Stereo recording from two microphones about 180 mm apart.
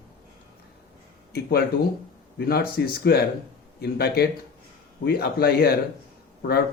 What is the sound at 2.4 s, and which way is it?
Speech, 60° left (ahead or behind).